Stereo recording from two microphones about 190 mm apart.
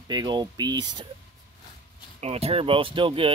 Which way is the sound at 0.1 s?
20° right (ahead or behind).